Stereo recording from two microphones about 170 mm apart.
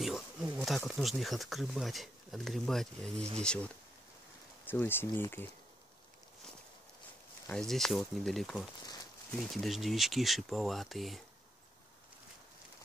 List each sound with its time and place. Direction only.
0.0 s speech: centre (ahead or behind)
7.4 s speech: 5° left (ahead or behind)